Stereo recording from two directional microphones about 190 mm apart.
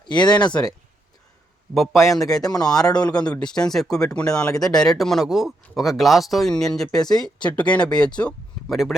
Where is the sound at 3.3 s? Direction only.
5° left (ahead or behind).